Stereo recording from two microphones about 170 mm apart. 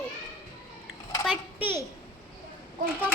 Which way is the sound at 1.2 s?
10° right (ahead or behind).